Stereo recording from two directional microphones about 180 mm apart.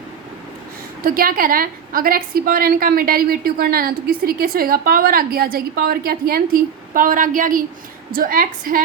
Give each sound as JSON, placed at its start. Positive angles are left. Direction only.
{"t": 1.0, "sound": "a woman's voice", "side_deg": -50}